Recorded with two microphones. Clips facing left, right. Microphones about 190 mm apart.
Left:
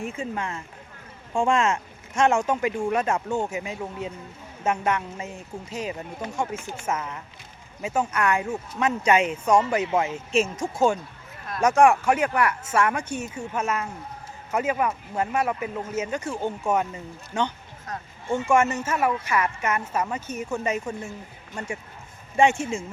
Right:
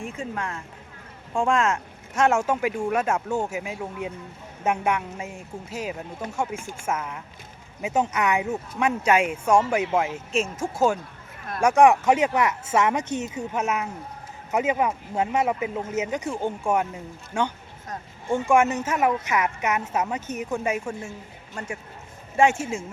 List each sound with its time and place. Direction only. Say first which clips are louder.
0.0 s speech: left 1 dB; centre (ahead or behind)
6.6 s speech: left 1 dB; 50° right (ahead or behind)
6.8 s speech: right 1 dB; 10° right (ahead or behind)
21.1 s speech: left 1 dB; 5° right (ahead or behind)